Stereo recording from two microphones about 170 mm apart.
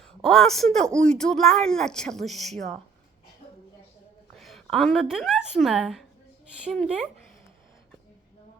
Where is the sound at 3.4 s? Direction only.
40° left (ahead or behind).